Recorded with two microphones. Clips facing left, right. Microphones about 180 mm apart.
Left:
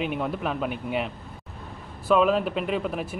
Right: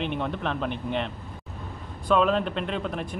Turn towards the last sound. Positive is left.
turn(degrees=5)  # may be behind; listen again after turning